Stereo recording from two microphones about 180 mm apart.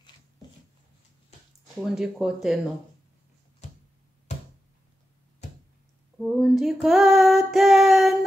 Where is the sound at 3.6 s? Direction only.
45° left (ahead or behind).